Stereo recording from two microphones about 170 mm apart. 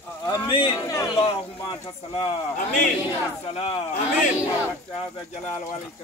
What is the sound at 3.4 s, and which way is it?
Speech, 35° left (ahead or behind).